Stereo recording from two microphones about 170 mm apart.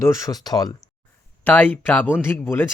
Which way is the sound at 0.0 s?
20° left (ahead or behind).